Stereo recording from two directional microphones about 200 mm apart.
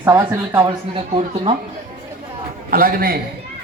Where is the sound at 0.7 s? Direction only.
30° right (ahead or behind).